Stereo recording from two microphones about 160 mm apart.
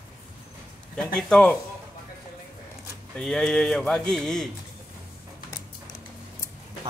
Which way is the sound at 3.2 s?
5° left (ahead or behind).